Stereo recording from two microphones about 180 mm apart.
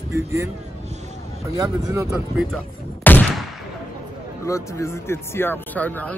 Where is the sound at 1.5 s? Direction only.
15° right (ahead or behind).